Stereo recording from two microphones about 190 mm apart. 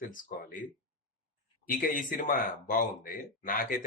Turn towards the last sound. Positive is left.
turn(degrees=45)  # may be behind; listen again after turning